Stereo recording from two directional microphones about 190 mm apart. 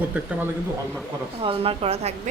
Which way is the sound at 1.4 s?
30° right (ahead or behind).